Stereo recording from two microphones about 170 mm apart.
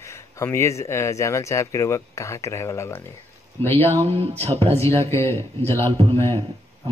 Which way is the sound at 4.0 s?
35° right (ahead or behind).